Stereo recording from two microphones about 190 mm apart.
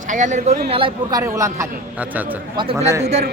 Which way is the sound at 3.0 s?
35° right (ahead or behind).